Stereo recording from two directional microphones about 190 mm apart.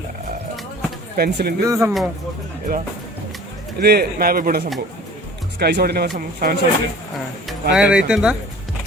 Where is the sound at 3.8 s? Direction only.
55° right (ahead or behind).